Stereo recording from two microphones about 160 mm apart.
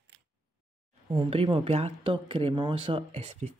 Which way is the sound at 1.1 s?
35° right (ahead or behind).